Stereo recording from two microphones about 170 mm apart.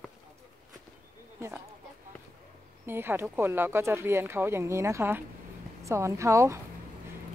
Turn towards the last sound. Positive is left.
turn(degrees=-15)  # may be behind; listen again after turning